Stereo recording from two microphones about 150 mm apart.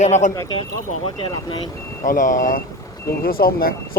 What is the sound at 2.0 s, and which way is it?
Speech, 60° left (ahead or behind).